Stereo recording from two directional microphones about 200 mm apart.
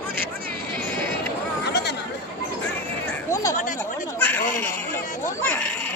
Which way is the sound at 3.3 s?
15° left (ahead or behind).